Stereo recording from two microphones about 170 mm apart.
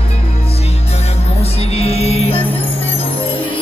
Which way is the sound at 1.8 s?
35° left (ahead or behind).